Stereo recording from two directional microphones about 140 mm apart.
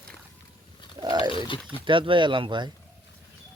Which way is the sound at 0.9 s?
30° right (ahead or behind).